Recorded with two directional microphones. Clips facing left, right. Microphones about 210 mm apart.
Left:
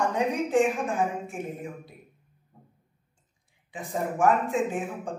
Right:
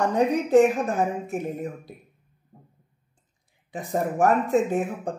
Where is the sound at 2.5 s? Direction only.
35° right (ahead or behind).